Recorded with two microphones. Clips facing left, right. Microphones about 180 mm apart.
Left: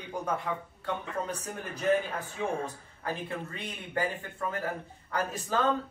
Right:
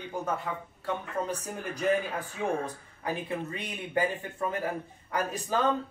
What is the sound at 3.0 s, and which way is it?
Speech, 15° right (ahead or behind).